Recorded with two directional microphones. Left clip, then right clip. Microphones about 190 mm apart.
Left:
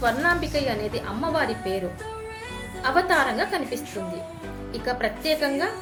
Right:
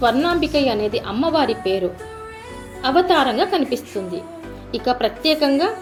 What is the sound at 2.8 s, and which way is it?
A woman's voice, 20° right (ahead or behind).